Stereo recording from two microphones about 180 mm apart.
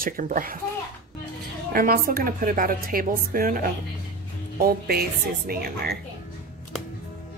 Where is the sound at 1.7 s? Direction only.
55° right (ahead or behind).